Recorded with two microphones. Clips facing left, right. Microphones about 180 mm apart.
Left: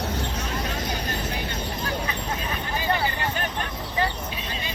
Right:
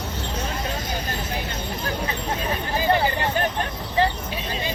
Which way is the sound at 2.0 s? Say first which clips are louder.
Right 3 dB; 35° right (ahead or behind).